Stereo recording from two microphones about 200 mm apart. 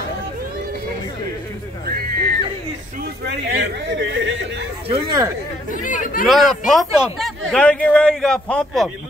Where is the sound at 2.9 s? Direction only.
50° right (ahead or behind).